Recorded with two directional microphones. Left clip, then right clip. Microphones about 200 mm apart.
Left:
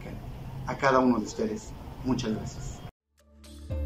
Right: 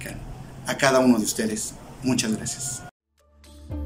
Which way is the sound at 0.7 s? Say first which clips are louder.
Right 4 dB; 30° right (ahead or behind).